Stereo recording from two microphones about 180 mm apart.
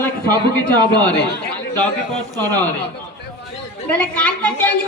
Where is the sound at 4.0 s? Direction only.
10° left (ahead or behind).